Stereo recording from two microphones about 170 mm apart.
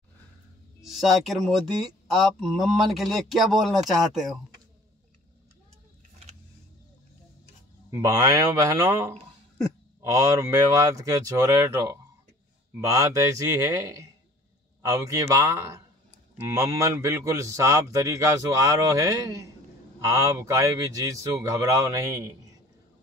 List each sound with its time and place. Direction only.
0.8 s speech: centre (ahead or behind)
7.9 s a man's voice: 20° right (ahead or behind)